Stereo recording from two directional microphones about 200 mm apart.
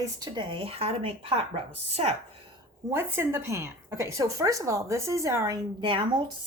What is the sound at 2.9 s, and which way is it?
A woman's voice, 10° right (ahead or behind).